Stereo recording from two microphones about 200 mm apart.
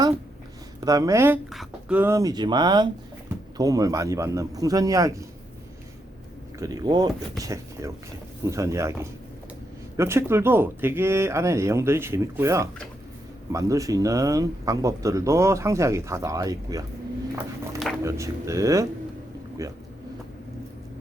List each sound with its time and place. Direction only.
0.8 s speech: 15° right (ahead or behind)
6.6 s speech: 20° right (ahead or behind)
18.0 s speech: 15° right (ahead or behind)